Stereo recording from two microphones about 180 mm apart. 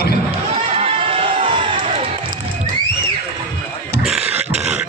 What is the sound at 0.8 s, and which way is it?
Run, 30° right (ahead or behind).